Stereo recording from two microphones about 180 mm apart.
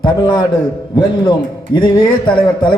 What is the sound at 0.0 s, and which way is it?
A man's voice, 25° left (ahead or behind).